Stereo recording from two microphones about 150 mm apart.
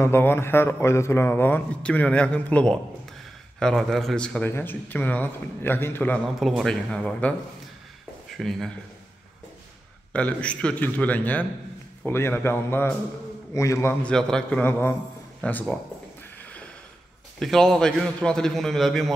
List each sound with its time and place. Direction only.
0.0 s a man's voice: 15° left (ahead or behind)
6.2 s a man's voice: centre (ahead or behind)
8.4 s a man's voice: centre (ahead or behind)
10.1 s a man's voice: 10° left (ahead or behind)
14.0 s speech: 5° left (ahead or behind)
17.4 s a man's voice: centre (ahead or behind)